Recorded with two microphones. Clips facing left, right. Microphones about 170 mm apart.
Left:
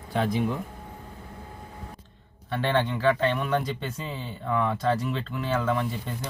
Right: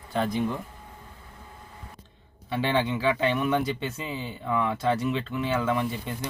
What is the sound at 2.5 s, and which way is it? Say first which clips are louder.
Speech: even; centre (ahead or behind).